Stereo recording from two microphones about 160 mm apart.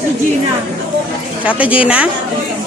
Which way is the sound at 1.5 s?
10° right (ahead or behind).